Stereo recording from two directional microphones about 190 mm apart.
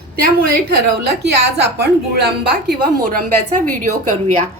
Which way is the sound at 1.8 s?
55° right (ahead or behind).